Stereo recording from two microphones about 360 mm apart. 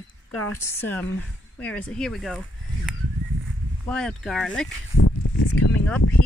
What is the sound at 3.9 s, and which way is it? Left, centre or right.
Speech, centre.